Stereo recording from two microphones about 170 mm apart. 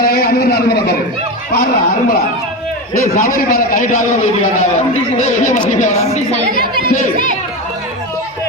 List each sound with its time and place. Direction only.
0.0 s a sound: 60° left (ahead or behind)
1.5 s speech: 65° left (ahead or behind)
2.9 s a man's voice: 50° left (ahead or behind)